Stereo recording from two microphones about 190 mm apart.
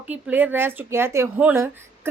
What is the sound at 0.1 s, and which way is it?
A woman's voice, 10° right (ahead or behind).